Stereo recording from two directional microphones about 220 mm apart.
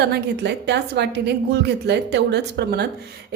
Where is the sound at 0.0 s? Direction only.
50° right (ahead or behind).